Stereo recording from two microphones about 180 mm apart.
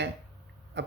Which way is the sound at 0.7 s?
70° right (ahead or behind).